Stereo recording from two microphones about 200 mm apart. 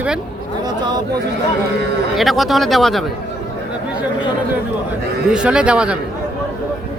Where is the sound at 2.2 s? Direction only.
Centre (ahead or behind).